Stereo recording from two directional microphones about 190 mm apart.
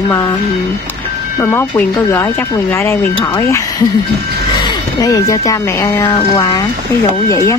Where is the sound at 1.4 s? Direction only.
10° left (ahead or behind).